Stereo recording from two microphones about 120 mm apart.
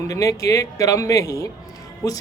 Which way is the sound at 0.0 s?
30° left (ahead or behind).